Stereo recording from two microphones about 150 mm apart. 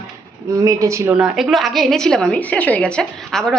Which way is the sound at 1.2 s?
Centre (ahead or behind).